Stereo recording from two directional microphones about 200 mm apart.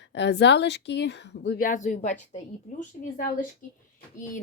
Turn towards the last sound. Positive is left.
turn(degrees=40)  # may be behind; listen again after turning